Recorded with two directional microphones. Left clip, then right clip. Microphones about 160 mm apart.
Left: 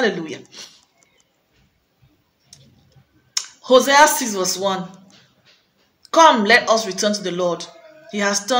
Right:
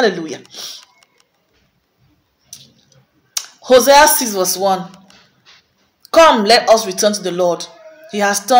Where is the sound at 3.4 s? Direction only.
10° left (ahead or behind).